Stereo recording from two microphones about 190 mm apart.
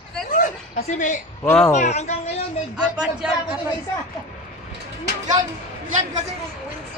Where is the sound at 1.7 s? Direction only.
35° left (ahead or behind).